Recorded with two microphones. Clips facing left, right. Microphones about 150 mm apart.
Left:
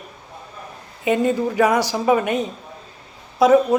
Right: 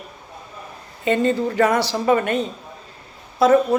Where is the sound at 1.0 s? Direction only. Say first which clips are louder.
Even; 10° left (ahead or behind).